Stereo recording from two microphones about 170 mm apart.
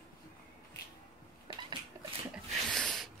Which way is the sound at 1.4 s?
30° right (ahead or behind).